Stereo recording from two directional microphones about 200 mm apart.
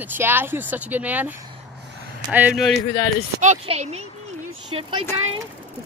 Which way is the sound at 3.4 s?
35° right (ahead or behind).